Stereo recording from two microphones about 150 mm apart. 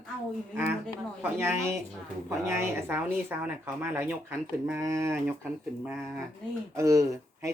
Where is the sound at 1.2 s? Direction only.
15° right (ahead or behind).